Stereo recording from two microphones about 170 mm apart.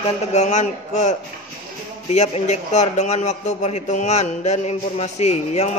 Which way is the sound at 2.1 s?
40° left (ahead or behind).